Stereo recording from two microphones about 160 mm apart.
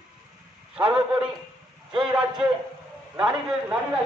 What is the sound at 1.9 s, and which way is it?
A man's voice, 5° right (ahead or behind).